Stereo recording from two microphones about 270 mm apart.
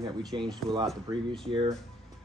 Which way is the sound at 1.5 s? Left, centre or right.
Centre.